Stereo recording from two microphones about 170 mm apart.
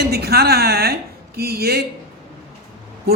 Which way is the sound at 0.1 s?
70° right (ahead or behind).